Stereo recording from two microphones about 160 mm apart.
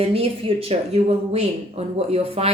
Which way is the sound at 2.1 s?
40° right (ahead or behind).